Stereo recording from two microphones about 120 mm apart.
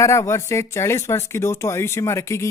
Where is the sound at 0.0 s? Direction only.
25° left (ahead or behind).